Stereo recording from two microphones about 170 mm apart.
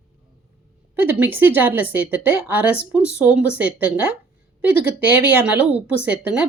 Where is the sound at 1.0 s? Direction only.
10° right (ahead or behind).